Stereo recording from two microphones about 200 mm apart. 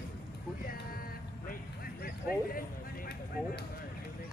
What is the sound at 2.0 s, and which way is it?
Speech, 45° left (ahead or behind).